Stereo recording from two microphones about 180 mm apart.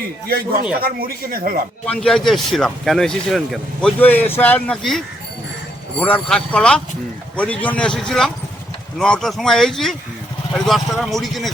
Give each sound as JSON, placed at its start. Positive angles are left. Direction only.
{"t": 0.3, "sound": "speech", "side_deg": -60}
{"t": 1.9, "sound": "speech", "side_deg": 0}